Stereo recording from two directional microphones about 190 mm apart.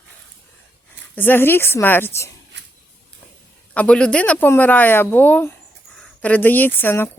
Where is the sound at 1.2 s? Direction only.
10° left (ahead or behind).